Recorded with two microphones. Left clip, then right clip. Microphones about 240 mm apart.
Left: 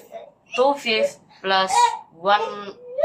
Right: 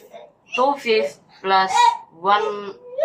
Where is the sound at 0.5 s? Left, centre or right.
Left.